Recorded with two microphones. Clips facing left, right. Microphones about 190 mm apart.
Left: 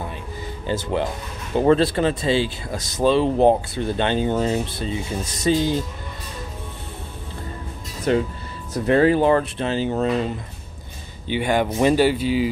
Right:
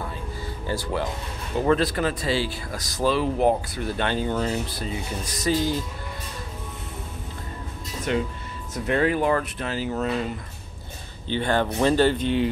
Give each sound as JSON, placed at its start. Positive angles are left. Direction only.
{"t": 0.7, "sound": "speech", "side_deg": 20}
{"t": 8.1, "sound": "speech", "side_deg": 35}
{"t": 11.2, "sound": "speech", "side_deg": 10}